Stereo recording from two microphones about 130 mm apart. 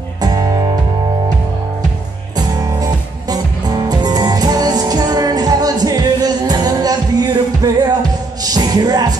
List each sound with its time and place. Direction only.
0.2 s music: 30° right (ahead or behind)
2.3 s music: 30° right (ahead or behind)